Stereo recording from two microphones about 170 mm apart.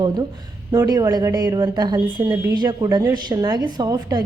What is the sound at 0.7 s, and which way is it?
A woman's voice, 20° right (ahead or behind).